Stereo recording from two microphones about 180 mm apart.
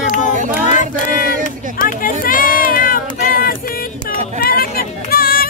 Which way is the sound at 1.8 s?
50° left (ahead or behind).